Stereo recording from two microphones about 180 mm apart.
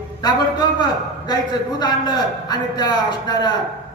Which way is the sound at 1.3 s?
25° left (ahead or behind).